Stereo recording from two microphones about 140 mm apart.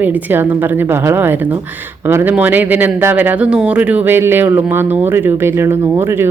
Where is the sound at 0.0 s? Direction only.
15° right (ahead or behind).